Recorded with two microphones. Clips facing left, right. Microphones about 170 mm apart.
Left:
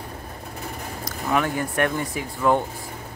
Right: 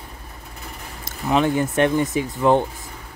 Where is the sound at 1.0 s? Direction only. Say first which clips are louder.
Right 4 dB; 20° right (ahead or behind).